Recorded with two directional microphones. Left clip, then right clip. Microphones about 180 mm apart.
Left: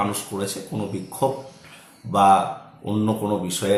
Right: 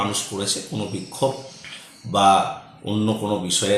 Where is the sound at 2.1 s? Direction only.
10° left (ahead or behind).